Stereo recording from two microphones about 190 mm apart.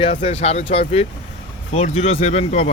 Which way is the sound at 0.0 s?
35° left (ahead or behind).